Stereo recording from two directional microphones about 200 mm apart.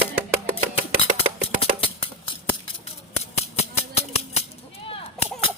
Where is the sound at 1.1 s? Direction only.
30° left (ahead or behind).